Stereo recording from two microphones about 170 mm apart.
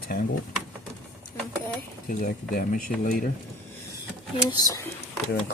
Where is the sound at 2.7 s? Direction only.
55° left (ahead or behind).